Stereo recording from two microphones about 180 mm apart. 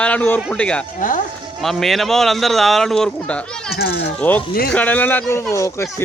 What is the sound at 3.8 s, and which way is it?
Speech, 60° left (ahead or behind).